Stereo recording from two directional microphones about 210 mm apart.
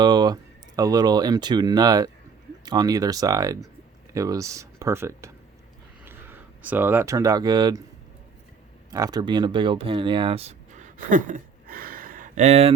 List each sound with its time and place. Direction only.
0.0 s a sound: 20° right (ahead or behind)
0.8 s speech: 20° right (ahead or behind)
8.9 s speech: 15° right (ahead or behind)